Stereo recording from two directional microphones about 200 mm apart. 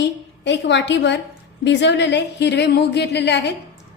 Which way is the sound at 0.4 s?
60° left (ahead or behind).